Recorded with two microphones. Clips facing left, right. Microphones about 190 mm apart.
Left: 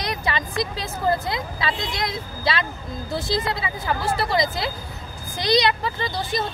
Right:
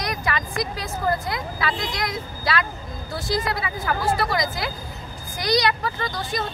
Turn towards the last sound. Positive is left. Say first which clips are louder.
# left 1 dB
turn(degrees=25)  # may be behind; listen again after turning